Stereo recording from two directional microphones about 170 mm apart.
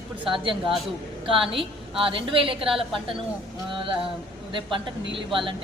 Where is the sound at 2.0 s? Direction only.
30° right (ahead or behind).